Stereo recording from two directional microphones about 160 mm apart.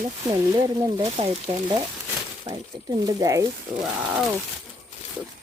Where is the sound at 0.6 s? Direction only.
25° right (ahead or behind).